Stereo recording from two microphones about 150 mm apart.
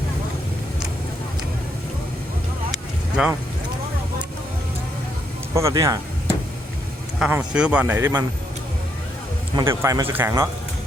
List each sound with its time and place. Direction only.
3.2 s speech: 5° right (ahead or behind)
5.5 s speech: 20° right (ahead or behind)
7.2 s speech: 10° right (ahead or behind)
9.6 s speech: 20° right (ahead or behind)